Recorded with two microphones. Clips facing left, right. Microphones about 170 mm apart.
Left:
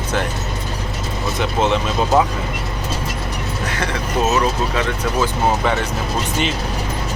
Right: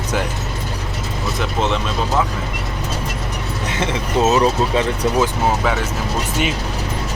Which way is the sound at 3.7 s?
25° right (ahead or behind).